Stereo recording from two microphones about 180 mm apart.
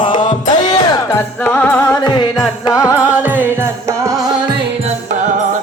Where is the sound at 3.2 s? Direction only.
10° right (ahead or behind).